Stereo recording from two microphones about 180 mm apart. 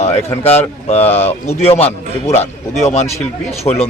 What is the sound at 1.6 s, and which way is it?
Speech, 35° left (ahead or behind).